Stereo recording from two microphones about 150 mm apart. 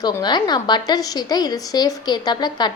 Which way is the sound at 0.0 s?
30° left (ahead or behind).